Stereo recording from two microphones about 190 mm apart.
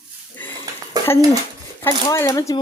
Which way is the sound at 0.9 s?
20° right (ahead or behind).